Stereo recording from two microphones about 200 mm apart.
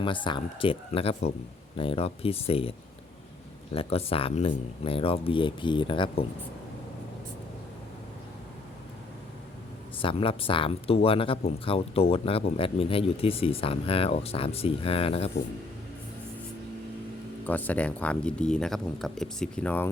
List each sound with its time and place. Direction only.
0.0 s speech: 25° left (ahead or behind)
10.0 s speech: 25° left (ahead or behind)
17.4 s speech: 10° left (ahead or behind)